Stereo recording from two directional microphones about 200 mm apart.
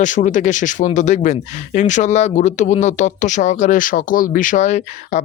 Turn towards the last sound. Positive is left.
turn(degrees=35)  # may be behind; listen again after turning